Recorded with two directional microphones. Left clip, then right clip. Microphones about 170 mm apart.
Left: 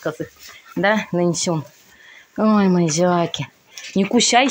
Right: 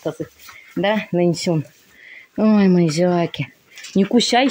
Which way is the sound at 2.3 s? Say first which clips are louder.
Right 1 dB; 35° right (ahead or behind).